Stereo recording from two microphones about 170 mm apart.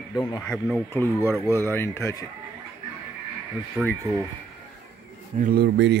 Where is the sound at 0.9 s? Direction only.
15° left (ahead or behind).